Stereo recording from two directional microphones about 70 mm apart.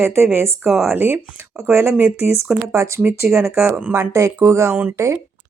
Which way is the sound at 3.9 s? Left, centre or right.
Right.